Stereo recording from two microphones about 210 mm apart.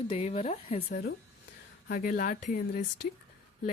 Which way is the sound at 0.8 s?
50° left (ahead or behind).